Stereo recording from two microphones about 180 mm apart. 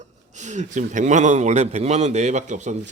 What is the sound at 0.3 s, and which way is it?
A man's voice, 40° right (ahead or behind).